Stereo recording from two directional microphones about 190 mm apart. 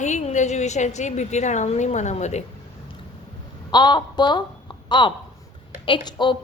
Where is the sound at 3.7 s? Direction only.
25° left (ahead or behind).